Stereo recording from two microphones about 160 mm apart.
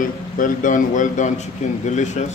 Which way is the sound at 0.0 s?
55° left (ahead or behind).